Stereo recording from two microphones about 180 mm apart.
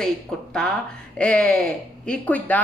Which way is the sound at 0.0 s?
5° left (ahead or behind).